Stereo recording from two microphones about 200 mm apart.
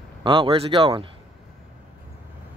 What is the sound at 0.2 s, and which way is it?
Speech, 25° right (ahead or behind).